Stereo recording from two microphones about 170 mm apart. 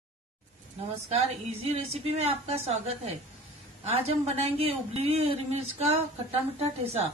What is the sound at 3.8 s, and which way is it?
A woman's voice, 35° right (ahead or behind).